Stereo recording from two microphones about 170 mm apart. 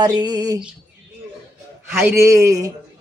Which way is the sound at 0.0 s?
25° right (ahead or behind).